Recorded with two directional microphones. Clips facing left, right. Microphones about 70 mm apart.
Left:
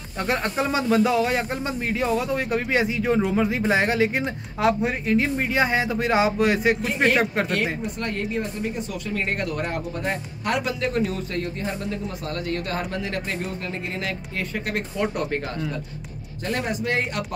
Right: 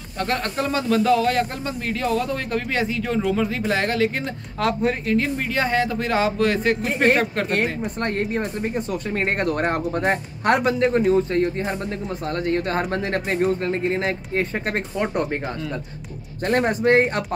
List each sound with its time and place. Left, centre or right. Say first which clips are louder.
0.2 s speech: even; centre
8.0 s speech: right 5 dB; right
15.0 s speech: right 1 dB; right
16.4 s speech: right 7 dB; right